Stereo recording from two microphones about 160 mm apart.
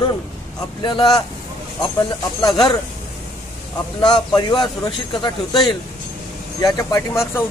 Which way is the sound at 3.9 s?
25° left (ahead or behind).